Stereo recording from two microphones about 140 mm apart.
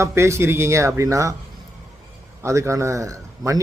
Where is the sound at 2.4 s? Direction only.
20° right (ahead or behind).